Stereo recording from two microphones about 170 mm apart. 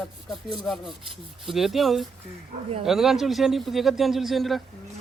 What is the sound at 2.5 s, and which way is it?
Speech, 45° right (ahead or behind).